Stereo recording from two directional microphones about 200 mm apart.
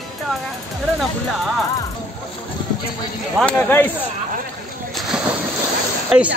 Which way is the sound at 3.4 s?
10° left (ahead or behind).